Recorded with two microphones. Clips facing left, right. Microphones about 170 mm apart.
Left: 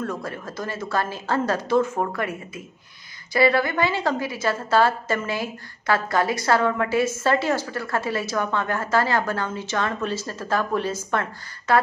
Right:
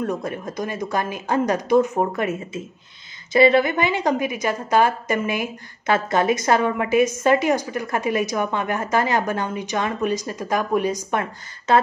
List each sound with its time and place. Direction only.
0.0 s a woman's voice: 20° right (ahead or behind)